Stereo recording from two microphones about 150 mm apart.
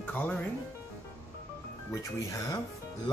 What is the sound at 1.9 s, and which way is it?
Speech, 20° left (ahead or behind).